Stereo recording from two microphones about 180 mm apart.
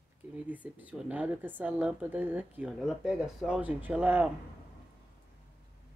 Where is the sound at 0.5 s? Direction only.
10° right (ahead or behind).